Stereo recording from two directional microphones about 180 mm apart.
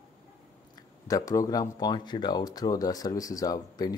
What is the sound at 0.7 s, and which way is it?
Speech, 20° left (ahead or behind).